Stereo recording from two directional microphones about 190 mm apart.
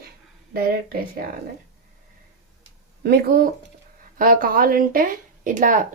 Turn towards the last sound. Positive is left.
turn(degrees=-45)  # may be behind; listen again after turning